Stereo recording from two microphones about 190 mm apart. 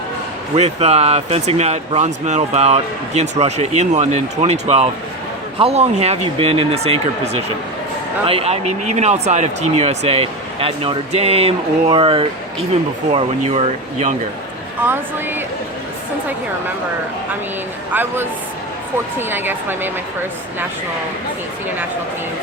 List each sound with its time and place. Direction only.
0.5 s speech: 35° right (ahead or behind)
8.3 s speech: 30° right (ahead or behind)
14.8 s speech: 10° right (ahead or behind)
17.9 s speech: 10° right (ahead or behind)